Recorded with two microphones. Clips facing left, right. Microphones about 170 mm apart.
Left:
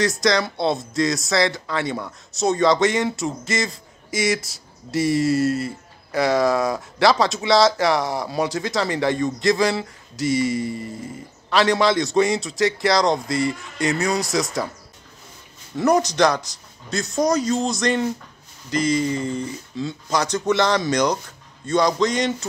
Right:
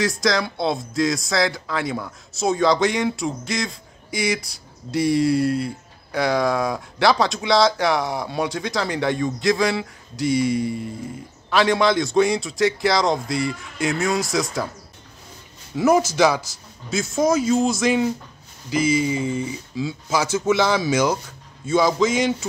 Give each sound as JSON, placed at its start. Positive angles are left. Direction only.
{"t": 0.0, "sound": "speech", "side_deg": 0}
{"t": 15.7, "sound": "speech", "side_deg": -5}